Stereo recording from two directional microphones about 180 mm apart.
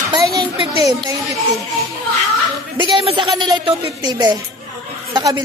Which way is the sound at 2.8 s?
25° right (ahead or behind).